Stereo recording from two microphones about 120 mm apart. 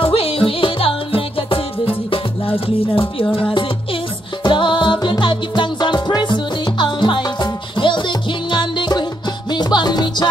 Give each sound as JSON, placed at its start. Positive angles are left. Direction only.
{"t": 0.0, "sound": "music", "side_deg": 50}